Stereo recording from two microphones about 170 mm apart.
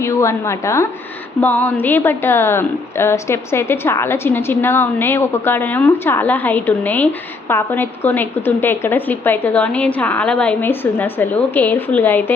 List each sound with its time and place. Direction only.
0.0 s a woman's voice: 15° left (ahead or behind)